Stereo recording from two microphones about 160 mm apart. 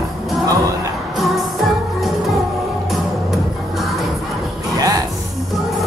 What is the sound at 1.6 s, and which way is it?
Music, centre (ahead or behind).